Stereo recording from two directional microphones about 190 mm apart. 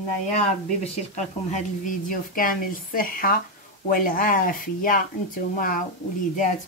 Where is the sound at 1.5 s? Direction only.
45° left (ahead or behind).